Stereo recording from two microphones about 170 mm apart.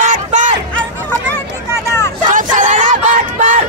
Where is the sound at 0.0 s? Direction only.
45° right (ahead or behind).